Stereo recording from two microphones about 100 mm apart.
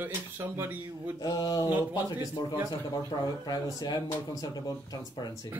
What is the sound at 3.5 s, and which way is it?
Speech, 40° left (ahead or behind).